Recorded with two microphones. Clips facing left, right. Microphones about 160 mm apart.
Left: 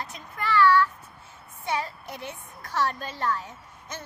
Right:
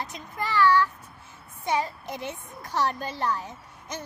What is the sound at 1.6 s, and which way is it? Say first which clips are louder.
A woman's voice: right 3 dB; 15° right (ahead or behind).